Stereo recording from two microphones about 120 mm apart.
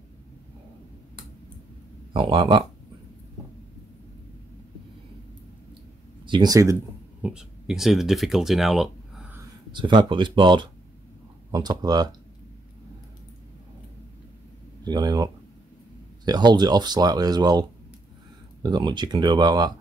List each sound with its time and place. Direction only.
2.1 s speech: 45° right (ahead or behind)
6.2 s speech: 35° right (ahead or behind)
7.2 s speech: 5° right (ahead or behind)
9.7 s speech: 40° right (ahead or behind)
14.9 s speech: 35° right (ahead or behind)
16.3 s speech: 35° right (ahead or behind)